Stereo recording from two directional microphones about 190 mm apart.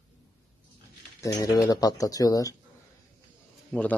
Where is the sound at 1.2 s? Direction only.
20° left (ahead or behind).